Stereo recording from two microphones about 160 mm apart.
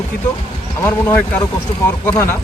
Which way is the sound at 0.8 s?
15° left (ahead or behind).